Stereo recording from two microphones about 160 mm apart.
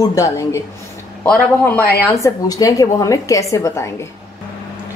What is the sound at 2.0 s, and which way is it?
A woman's voice, 20° left (ahead or behind).